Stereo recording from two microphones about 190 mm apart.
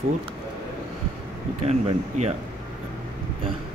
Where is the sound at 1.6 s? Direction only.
35° right (ahead or behind).